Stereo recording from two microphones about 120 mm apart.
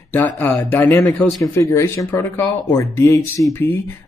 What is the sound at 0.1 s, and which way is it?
Speech, 15° left (ahead or behind).